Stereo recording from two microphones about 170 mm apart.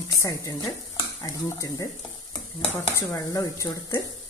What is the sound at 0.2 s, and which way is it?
Speech, 20° left (ahead or behind).